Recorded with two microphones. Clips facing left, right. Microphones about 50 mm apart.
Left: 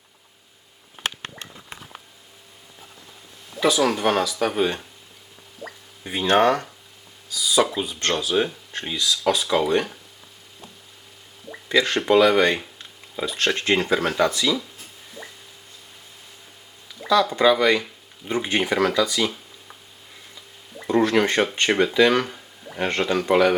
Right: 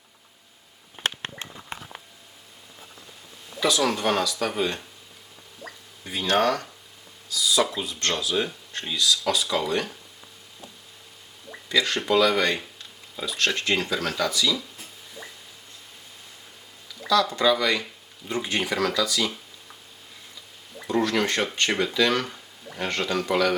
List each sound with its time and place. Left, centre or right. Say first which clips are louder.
3.6 s speech: left 3 dB; centre
5.6 s drip: left 4 dB; centre
6.1 s speech: left 4 dB; left
11.7 s speech: left 4 dB; left
17.1 s speech: left 3 dB; centre
20.8 s speech: left 5 dB; centre